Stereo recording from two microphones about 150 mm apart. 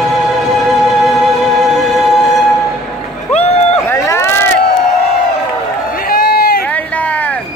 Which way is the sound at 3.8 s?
20° left (ahead or behind).